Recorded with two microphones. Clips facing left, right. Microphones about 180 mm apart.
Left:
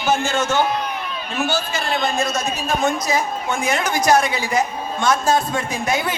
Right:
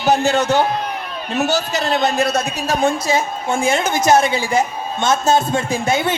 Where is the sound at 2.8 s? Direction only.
30° right (ahead or behind).